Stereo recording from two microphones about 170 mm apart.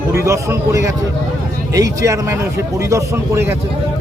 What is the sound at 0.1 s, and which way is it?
Speech, 15° right (ahead or behind).